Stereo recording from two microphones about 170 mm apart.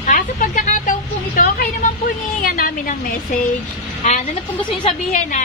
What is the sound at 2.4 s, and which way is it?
Speech, 55° left (ahead or behind).